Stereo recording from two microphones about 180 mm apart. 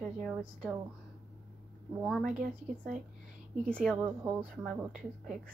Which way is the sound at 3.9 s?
10° right (ahead or behind).